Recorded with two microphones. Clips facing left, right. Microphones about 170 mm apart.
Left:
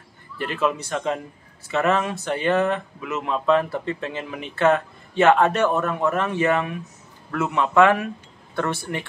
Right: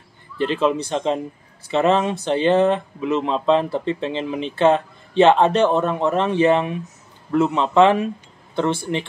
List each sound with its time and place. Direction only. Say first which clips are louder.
0.4 s speech: right 5 dB; 25° right (ahead or behind)